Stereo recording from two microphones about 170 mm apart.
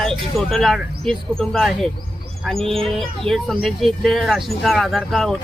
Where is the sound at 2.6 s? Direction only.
35° right (ahead or behind).